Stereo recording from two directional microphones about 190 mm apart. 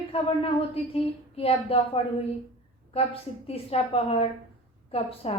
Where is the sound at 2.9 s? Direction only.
30° left (ahead or behind).